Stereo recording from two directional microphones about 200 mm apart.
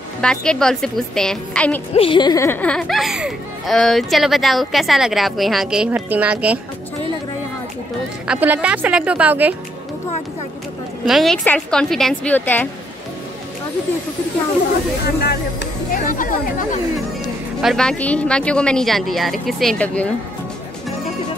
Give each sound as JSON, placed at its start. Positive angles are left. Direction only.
{"t": 0.2, "sound": "speech", "side_deg": 5}
{"t": 2.0, "sound": "speech", "side_deg": 25}
{"t": 8.3, "sound": "speech", "side_deg": -5}
{"t": 11.1, "sound": "speech", "side_deg": 0}
{"t": 15.0, "sound": "speech", "side_deg": 50}
{"t": 17.6, "sound": "speech", "side_deg": 0}